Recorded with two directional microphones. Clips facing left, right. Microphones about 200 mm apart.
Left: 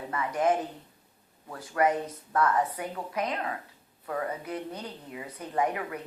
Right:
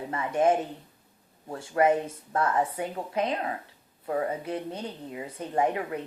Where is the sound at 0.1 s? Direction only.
25° right (ahead or behind).